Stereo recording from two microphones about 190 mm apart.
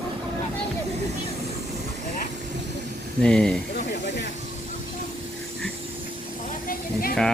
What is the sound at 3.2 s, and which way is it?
Speech, 5° left (ahead or behind).